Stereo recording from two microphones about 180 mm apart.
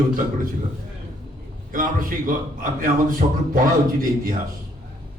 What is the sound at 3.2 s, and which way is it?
Speech, 35° right (ahead or behind).